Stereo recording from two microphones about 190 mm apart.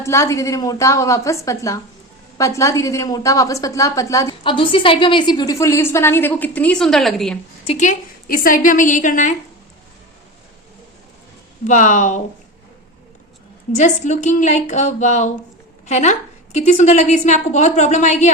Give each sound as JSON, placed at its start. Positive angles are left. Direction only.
{"t": 0.0, "sound": "a woman's voice", "side_deg": 15}
{"t": 7.6, "sound": "a woman's voice", "side_deg": 35}
{"t": 11.6, "sound": "a woman's voice", "side_deg": 40}
{"t": 13.7, "sound": "a woman's voice", "side_deg": 40}